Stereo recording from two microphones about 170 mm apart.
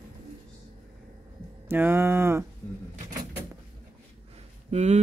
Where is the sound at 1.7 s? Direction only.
15° right (ahead or behind).